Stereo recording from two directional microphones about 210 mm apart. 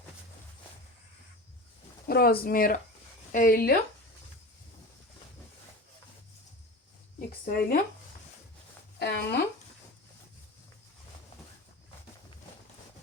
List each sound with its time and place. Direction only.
2.0 s speech: 45° left (ahead or behind)
7.4 s speech: 45° left (ahead or behind)
9.0 s speech: 50° left (ahead or behind)